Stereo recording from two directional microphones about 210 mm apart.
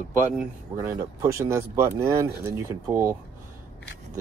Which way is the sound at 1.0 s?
15° right (ahead or behind).